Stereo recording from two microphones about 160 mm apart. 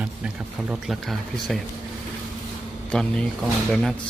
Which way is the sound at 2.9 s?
5° left (ahead or behind).